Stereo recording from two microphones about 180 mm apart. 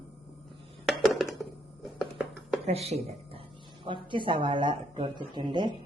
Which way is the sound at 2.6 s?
35° right (ahead or behind).